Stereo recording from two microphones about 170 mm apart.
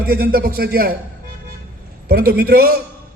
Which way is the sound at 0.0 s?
60° right (ahead or behind).